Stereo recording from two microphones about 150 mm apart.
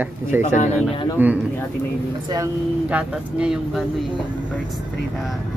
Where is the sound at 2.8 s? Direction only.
10° right (ahead or behind).